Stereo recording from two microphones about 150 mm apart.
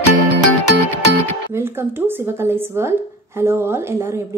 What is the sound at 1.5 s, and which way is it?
Speech, 15° right (ahead or behind).